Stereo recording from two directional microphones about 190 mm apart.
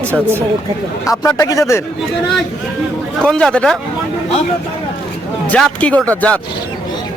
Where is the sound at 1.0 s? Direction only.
20° left (ahead or behind).